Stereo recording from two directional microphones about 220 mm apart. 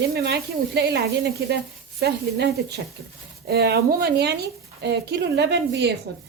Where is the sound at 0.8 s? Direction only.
50° right (ahead or behind).